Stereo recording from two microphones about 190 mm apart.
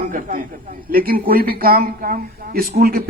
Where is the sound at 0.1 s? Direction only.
45° right (ahead or behind).